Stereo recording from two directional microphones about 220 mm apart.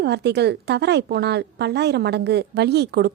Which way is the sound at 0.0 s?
50° right (ahead or behind).